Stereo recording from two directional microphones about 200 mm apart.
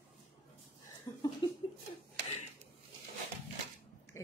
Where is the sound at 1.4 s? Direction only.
25° left (ahead or behind).